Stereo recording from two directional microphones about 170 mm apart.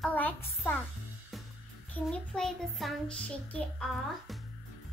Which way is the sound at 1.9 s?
5° left (ahead or behind).